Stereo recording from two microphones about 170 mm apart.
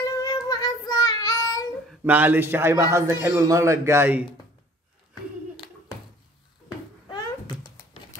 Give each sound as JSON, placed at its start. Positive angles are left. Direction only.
{"t": 0.2, "sound": "child singing", "side_deg": 20}
{"t": 2.0, "sound": "a man's voice", "side_deg": -10}
{"t": 7.1, "sound": "cat", "side_deg": 25}